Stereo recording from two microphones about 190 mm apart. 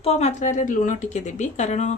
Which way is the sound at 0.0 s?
35° left (ahead or behind).